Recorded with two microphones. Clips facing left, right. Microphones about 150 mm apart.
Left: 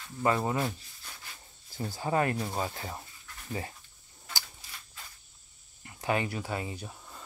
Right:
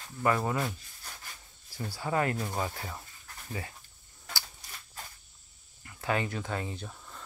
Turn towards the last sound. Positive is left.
turn(degrees=10)  # may be behind; listen again after turning